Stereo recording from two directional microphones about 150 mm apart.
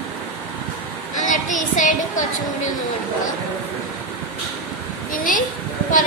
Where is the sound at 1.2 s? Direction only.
60° left (ahead or behind).